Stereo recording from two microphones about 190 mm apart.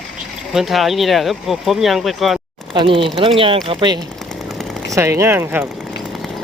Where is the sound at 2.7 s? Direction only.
25° right (ahead or behind).